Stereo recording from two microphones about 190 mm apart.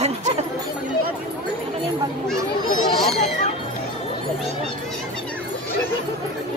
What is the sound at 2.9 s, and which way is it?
Speech, centre (ahead or behind).